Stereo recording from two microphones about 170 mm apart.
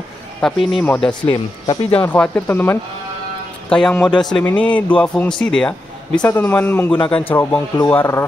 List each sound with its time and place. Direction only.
0.4 s a man's voice: centre (ahead or behind)
1.3 s speech: 30° left (ahead or behind)
2.0 s a man's voice: 10° left (ahead or behind)